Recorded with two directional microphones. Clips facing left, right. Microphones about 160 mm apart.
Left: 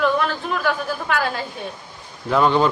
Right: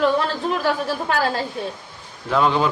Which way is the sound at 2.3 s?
Centre (ahead or behind).